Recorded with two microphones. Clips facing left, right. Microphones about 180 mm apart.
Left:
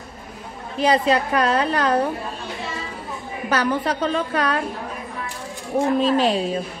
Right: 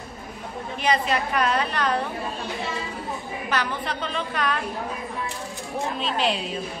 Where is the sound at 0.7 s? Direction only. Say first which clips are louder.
Left 6 dB; 35° left (ahead or behind).